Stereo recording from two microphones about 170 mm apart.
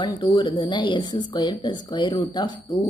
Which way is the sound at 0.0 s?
30° left (ahead or behind).